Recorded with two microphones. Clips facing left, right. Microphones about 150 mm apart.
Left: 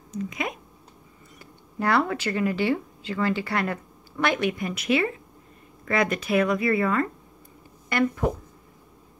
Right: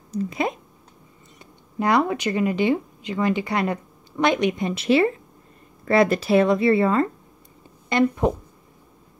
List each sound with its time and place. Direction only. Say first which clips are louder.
0.1 s speech: right 6 dB; 35° right (ahead or behind)
1.4 s speech: right 3 dB; 15° right (ahead or behind)